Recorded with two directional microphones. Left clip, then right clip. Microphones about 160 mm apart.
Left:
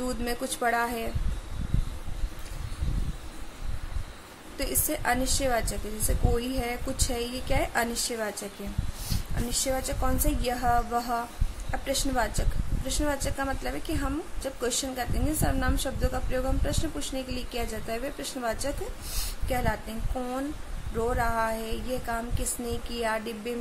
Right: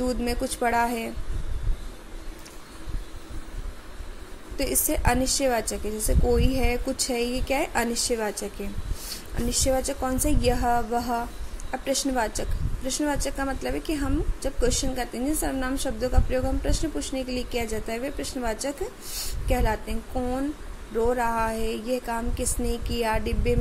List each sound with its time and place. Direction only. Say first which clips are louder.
0.0 s a woman's voice: right 4 dB; 15° right (ahead or behind)
4.6 s a woman's voice: right 4 dB; 15° right (ahead or behind)
9.5 s a woman's voice: right 5 dB; 15° right (ahead or behind)
21.1 s a woman's voice: right 1 dB; 15° right (ahead or behind)